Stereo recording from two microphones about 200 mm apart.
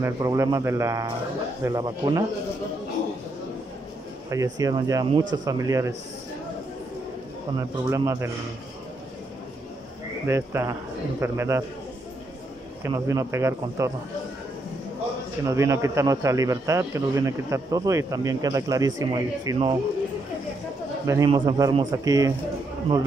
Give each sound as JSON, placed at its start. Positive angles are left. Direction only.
{"t": 0.0, "sound": "a man's voice", "side_deg": -15}
{"t": 4.3, "sound": "a man's voice", "side_deg": -15}
{"t": 7.9, "sound": "a man's voice", "side_deg": -15}
{"t": 10.2, "sound": "a man's voice", "side_deg": -15}
{"t": 12.8, "sound": "a man's voice", "side_deg": -15}
{"t": 15.4, "sound": "a man's voice", "side_deg": -15}
{"t": 21.1, "sound": "a man's voice", "side_deg": -20}